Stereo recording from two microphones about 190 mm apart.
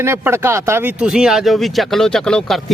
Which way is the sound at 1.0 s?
5° right (ahead or behind).